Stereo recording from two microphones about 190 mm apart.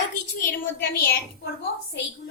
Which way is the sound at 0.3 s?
50° left (ahead or behind).